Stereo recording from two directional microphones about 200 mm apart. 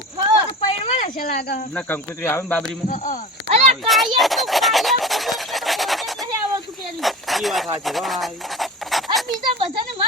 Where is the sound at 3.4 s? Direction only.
35° right (ahead or behind).